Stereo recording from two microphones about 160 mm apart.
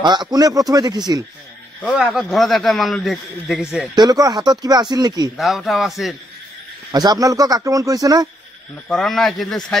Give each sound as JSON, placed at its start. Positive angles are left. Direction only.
{"t": 0.0, "sound": "speech", "side_deg": -25}
{"t": 2.0, "sound": "a man's voice", "side_deg": -5}
{"t": 3.9, "sound": "speech", "side_deg": -25}
{"t": 5.4, "sound": "a man's voice", "side_deg": 0}
{"t": 6.9, "sound": "speech", "side_deg": -25}
{"t": 8.8, "sound": "a man's voice", "side_deg": 5}